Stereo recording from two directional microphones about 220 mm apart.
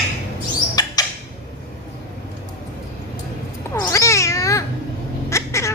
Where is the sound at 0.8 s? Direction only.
15° left (ahead or behind).